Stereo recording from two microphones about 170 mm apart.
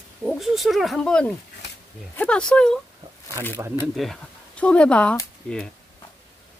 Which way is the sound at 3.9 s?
Centre (ahead or behind).